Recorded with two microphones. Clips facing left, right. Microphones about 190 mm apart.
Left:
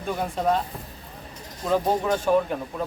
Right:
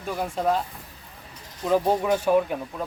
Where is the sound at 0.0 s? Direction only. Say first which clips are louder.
Left 1 dB; centre (ahead or behind).